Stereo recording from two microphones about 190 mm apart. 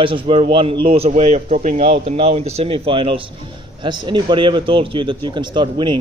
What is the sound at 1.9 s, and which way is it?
Speech, 30° right (ahead or behind).